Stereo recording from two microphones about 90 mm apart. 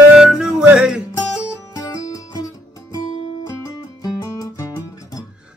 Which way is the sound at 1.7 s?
40° left (ahead or behind).